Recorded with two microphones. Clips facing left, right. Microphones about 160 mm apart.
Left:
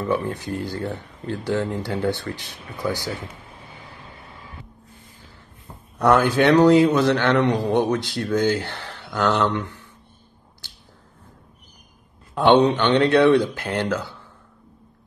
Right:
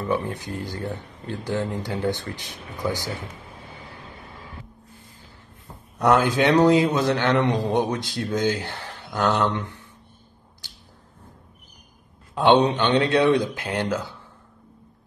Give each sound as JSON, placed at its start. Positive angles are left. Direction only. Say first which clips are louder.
{"t": 0.1, "sound": "a man's voice", "louder": "left 1 dB", "side_deg": -20}
{"t": 5.9, "sound": "a man's voice", "louder": "left 2 dB", "side_deg": -20}
{"t": 12.4, "sound": "speech", "louder": "left 2 dB", "side_deg": -15}